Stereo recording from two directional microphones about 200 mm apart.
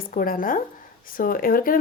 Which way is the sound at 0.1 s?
45° left (ahead or behind).